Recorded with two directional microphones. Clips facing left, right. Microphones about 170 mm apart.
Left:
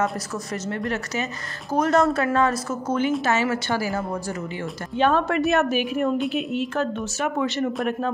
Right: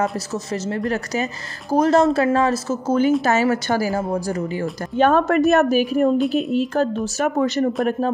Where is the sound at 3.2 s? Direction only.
40° right (ahead or behind).